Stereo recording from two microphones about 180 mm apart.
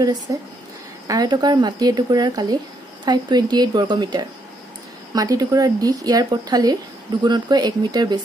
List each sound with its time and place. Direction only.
1.0 s speech: 20° right (ahead or behind)